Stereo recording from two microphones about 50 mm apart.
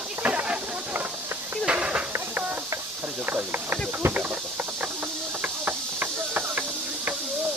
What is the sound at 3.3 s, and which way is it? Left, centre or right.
Speech, right.